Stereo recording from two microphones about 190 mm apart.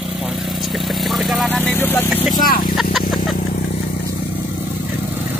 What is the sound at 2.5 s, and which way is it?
Speech, 50° left (ahead or behind).